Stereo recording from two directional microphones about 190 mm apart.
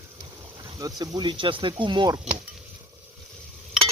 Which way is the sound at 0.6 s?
20° right (ahead or behind).